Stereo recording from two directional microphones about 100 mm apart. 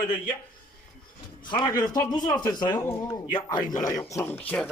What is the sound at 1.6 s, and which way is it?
Speech, 35° left (ahead or behind).